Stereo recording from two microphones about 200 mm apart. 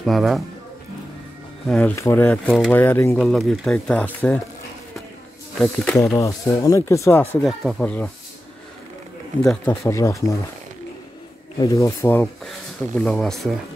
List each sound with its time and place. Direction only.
0.0 s speech: centre (ahead or behind)
1.7 s speech: 5° left (ahead or behind)
5.6 s speech: 5° left (ahead or behind)
6.1 s speech: 15° left (ahead or behind)
9.4 s speech: 10° left (ahead or behind)
11.6 s speech: 15° left (ahead or behind)